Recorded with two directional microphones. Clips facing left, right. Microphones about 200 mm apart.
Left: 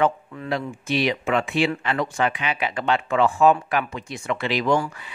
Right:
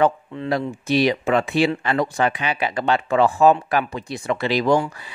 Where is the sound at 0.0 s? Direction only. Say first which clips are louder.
Right 3 dB; 35° right (ahead or behind).